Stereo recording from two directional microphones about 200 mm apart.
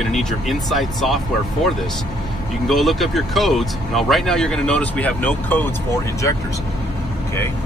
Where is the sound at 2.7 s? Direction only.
Centre (ahead or behind).